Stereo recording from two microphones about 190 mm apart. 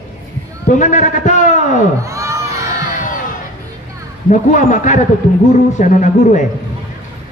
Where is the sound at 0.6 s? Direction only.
40° left (ahead or behind).